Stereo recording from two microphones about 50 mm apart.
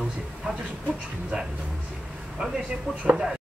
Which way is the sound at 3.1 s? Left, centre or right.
Centre.